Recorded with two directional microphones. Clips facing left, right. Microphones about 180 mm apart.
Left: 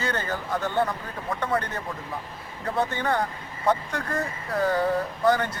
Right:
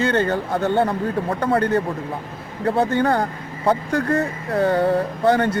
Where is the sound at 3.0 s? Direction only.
35° right (ahead or behind).